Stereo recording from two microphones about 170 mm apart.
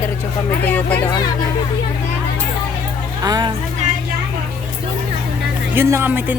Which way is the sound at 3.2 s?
25° right (ahead or behind).